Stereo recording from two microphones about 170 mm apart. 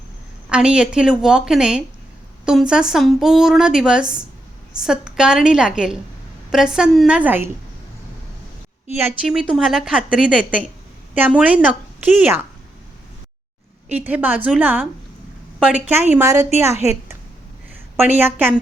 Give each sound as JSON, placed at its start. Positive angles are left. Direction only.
{"t": 0.5, "sound": "speech", "side_deg": -5}
{"t": 9.2, "sound": "a woman's voice", "side_deg": 0}
{"t": 13.9, "sound": "a woman's voice", "side_deg": -10}